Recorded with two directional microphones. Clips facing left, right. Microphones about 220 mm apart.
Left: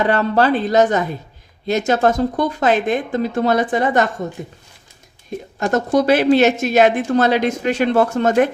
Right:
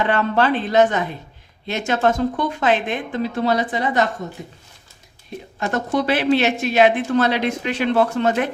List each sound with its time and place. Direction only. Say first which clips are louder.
0.0 s speech: left 3 dB; 40° left (ahead or behind)
5.5 s a woman's voice: left 5 dB; 45° left (ahead or behind)